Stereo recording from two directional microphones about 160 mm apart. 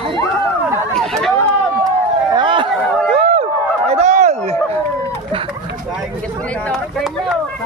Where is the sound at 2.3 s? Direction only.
30° right (ahead or behind).